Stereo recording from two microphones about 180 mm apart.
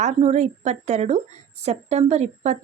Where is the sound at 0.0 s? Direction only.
40° right (ahead or behind).